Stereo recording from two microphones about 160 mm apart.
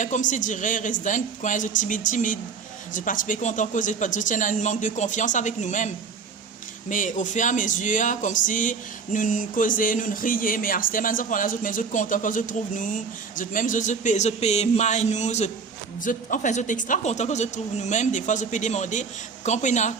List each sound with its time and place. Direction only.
0.0 s speech: 50° left (ahead or behind)